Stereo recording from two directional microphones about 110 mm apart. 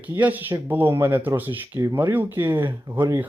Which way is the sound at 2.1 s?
20° right (ahead or behind).